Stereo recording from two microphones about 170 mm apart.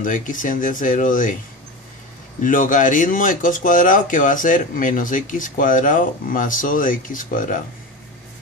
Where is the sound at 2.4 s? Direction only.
50° left (ahead or behind).